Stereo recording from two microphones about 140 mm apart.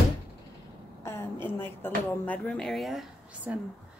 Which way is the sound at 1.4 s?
15° left (ahead or behind).